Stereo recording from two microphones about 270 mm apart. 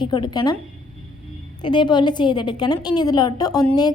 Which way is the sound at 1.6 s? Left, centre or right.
Centre.